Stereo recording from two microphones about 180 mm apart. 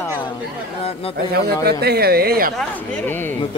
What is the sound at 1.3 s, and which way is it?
Speech, 60° right (ahead or behind).